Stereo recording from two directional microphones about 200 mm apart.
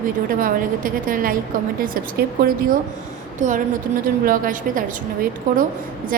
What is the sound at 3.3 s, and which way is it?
A woman's voice, 40° right (ahead or behind).